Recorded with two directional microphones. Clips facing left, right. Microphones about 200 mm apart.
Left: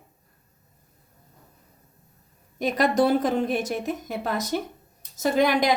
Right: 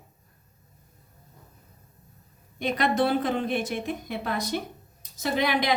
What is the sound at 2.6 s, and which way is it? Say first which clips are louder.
A woman's voice: left 3 dB; 40° left (ahead or behind).